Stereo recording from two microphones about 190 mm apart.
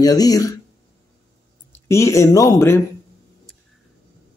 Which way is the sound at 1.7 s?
15° left (ahead or behind).